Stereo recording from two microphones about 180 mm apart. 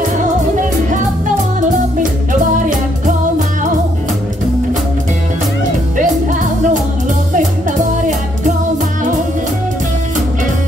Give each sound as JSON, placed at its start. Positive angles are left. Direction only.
{"t": 7.3, "sound": "music", "side_deg": -45}